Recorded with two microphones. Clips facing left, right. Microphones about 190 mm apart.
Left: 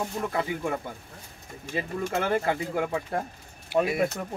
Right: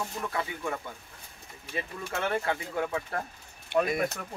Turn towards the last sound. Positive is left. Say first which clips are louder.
# left 2 dB
turn(degrees=5)  # may be behind; listen again after turning